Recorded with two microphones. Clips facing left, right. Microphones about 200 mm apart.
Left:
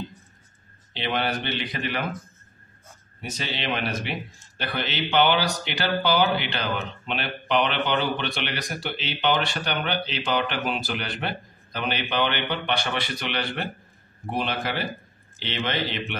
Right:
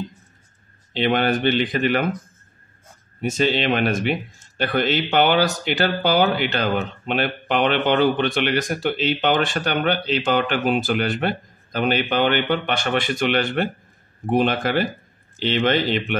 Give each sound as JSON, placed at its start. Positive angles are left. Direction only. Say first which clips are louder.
{"t": 1.0, "sound": "a man's voice", "louder": "right 8 dB", "side_deg": -50}
{"t": 3.2, "sound": "a man's voice", "louder": "right 12 dB", "side_deg": -50}